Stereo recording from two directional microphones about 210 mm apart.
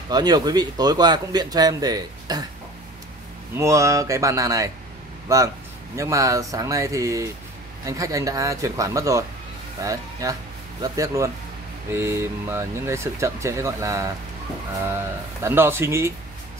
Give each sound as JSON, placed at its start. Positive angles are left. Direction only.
{"t": 0.1, "sound": "speech", "side_deg": -20}
{"t": 3.5, "sound": "speech", "side_deg": -15}